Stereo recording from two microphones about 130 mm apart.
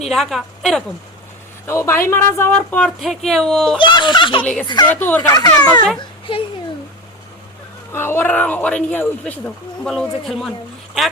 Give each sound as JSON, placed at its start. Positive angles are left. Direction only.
{"t": 0.0, "sound": "a woman's voice", "side_deg": 0}
{"t": 1.6, "sound": "speech", "side_deg": 20}
{"t": 3.8, "sound": "speech", "side_deg": 35}
{"t": 4.9, "sound": "a child's voice", "side_deg": 15}
{"t": 6.0, "sound": "a sound", "side_deg": 40}
{"t": 7.9, "sound": "a woman's voice", "side_deg": 15}